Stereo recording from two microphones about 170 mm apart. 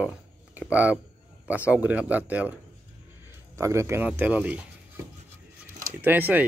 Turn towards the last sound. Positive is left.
turn(degrees=-10)  # may be behind; listen again after turning